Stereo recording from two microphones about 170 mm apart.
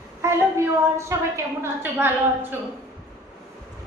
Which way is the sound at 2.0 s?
15° right (ahead or behind).